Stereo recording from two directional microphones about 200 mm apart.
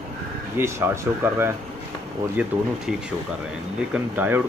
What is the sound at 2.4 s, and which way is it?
Speech, 5° right (ahead or behind).